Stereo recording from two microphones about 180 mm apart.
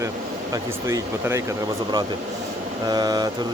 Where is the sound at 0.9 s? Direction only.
15° right (ahead or behind).